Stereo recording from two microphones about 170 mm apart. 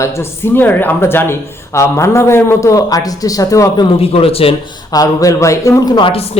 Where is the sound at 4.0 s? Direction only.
35° left (ahead or behind).